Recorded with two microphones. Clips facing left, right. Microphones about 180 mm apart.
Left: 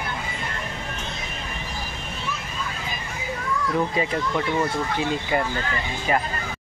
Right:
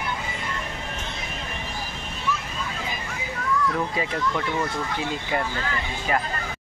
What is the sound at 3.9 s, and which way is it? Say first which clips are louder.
Speech: left 2 dB; 5° left (ahead or behind).